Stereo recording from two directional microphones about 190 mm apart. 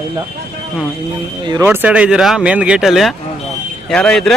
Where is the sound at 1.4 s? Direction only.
20° right (ahead or behind).